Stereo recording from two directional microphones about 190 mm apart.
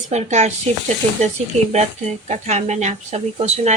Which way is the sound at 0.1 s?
35° right (ahead or behind).